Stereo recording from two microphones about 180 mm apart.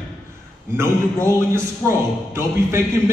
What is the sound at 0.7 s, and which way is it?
A man's voice, 15° right (ahead or behind).